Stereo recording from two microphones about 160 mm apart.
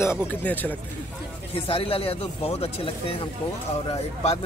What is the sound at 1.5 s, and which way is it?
Speech, 35° left (ahead or behind).